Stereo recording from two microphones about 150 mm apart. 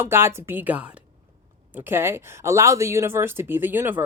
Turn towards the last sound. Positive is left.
turn(degrees=-15)  # may be behind; listen again after turning